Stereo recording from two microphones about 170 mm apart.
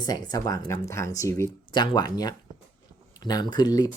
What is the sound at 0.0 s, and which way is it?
Speech, 25° left (ahead or behind).